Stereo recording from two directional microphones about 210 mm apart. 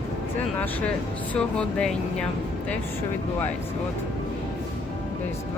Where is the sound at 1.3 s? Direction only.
5° left (ahead or behind).